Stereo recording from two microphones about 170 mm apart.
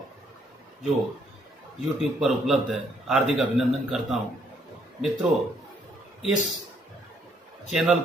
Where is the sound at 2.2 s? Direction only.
Centre (ahead or behind).